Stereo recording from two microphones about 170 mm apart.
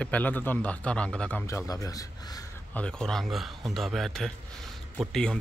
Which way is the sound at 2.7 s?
5° left (ahead or behind).